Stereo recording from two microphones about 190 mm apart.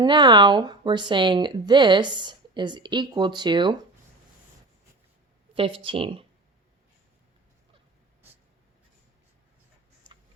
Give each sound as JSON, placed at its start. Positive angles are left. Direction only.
{"t": 0.0, "sound": "a woman's voice", "side_deg": -25}
{"t": 5.5, "sound": "a woman's voice", "side_deg": -30}